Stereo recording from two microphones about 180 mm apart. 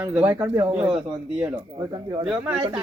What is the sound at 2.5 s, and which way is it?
Speech, 30° right (ahead or behind).